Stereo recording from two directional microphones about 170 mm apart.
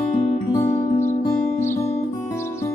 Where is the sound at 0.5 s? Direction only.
15° left (ahead or behind).